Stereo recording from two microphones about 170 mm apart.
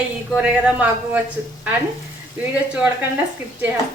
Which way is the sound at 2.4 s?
5° right (ahead or behind).